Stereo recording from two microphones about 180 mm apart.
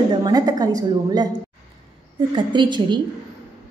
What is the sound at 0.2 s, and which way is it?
A woman's voice, 20° right (ahead or behind).